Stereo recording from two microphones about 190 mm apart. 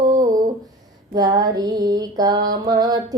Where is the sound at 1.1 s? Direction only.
20° right (ahead or behind).